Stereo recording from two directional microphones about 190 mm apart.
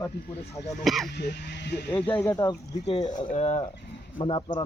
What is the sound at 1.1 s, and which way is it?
Speech, 60° left (ahead or behind).